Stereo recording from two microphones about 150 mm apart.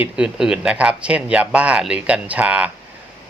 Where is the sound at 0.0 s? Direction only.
5° right (ahead or behind).